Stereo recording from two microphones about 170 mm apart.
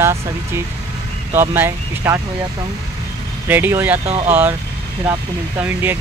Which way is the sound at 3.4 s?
10° right (ahead or behind).